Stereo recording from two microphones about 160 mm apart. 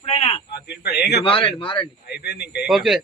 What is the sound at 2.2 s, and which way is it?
Speech, 90° left.